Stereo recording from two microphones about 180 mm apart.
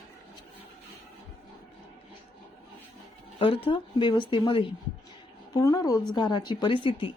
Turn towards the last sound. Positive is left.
turn(degrees=30)  # may be behind; listen again after turning